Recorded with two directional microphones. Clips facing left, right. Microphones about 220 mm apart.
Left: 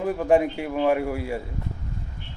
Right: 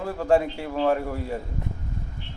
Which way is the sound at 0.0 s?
15° left (ahead or behind).